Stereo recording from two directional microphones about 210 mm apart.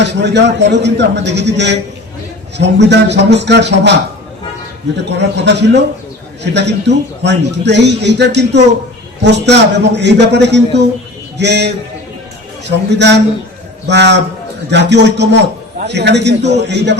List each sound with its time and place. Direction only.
0.0 s a man's voice: 55° right (ahead or behind)
5.0 s a man's voice: 55° right (ahead or behind)